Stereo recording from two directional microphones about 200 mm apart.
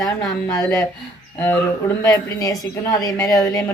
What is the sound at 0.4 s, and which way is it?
Speech, 15° left (ahead or behind).